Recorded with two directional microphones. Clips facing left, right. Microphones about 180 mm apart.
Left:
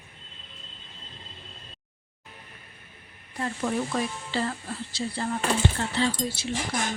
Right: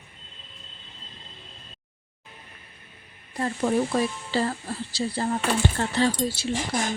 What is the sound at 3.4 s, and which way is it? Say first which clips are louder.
Speech: right 4 dB; 35° right (ahead or behind).